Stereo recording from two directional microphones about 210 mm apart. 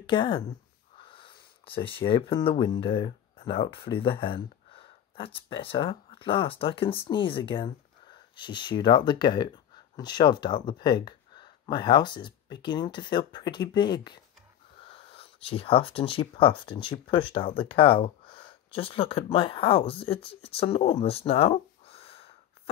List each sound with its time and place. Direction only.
0.0 s speech: 25° left (ahead or behind)